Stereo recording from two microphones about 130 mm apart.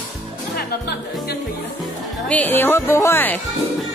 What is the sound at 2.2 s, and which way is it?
A woman's voice, 10° left (ahead or behind).